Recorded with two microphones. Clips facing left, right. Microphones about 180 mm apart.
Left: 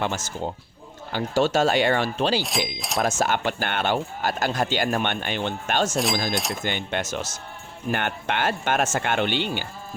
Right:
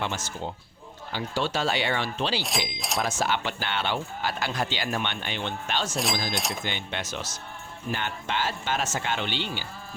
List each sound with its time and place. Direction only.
0.0 s speech: 45° left (ahead or behind)
2.4 s speech: centre (ahead or behind)
3.0 s speech: 45° left (ahead or behind)
6.3 s speech: centre (ahead or behind)
6.7 s speech: 50° left (ahead or behind)
7.9 s speech: 60° left (ahead or behind)